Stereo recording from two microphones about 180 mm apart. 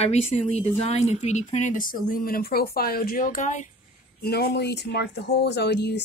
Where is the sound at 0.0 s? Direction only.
35° left (ahead or behind).